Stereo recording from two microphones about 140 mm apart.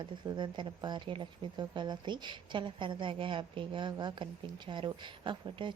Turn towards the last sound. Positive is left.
turn(degrees=-35)  # may be behind; listen again after turning